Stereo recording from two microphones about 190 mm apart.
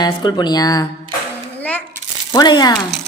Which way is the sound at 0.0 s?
20° left (ahead or behind).